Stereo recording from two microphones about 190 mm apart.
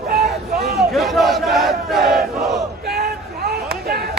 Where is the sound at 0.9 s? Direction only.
Centre (ahead or behind).